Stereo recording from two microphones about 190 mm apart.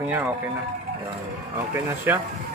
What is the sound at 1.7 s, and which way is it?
Speech, 10° right (ahead or behind).